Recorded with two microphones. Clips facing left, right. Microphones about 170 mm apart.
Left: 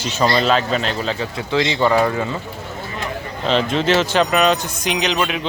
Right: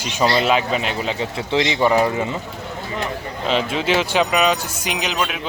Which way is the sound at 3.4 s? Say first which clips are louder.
Left 3 dB; 5° right (ahead or behind).